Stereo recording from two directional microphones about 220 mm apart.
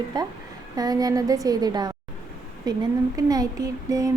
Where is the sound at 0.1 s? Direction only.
20° right (ahead or behind).